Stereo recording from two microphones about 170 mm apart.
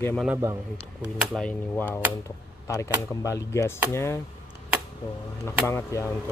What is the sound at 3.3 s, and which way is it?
Speech, 20° left (ahead or behind).